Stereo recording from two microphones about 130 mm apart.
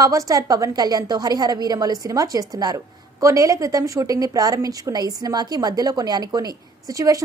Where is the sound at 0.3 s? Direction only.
25° right (ahead or behind).